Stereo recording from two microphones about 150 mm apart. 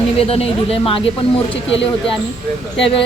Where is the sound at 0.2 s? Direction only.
40° left (ahead or behind).